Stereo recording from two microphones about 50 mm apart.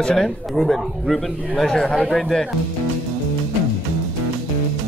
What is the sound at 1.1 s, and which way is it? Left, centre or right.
A man's voice, centre.